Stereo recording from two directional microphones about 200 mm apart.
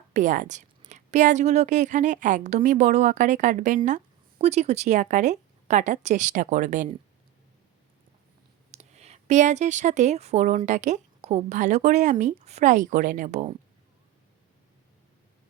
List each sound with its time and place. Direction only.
0.1 s a woman's voice: 40° right (ahead or behind)
8.7 s a woman's voice: 35° right (ahead or behind)